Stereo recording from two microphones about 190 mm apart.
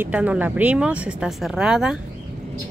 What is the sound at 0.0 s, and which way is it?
Speech, 5° right (ahead or behind).